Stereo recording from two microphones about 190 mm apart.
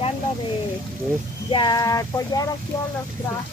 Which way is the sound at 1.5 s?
25° left (ahead or behind).